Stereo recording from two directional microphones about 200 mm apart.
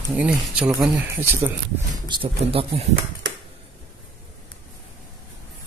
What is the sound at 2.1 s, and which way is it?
Speech, 25° right (ahead or behind).